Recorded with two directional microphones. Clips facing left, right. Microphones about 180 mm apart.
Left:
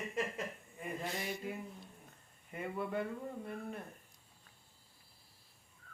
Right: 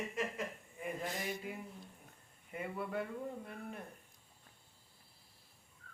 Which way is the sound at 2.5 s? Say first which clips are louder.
Left 2 dB; 5° right (ahead or behind).